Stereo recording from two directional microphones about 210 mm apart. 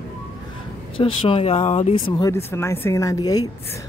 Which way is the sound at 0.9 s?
25° left (ahead or behind).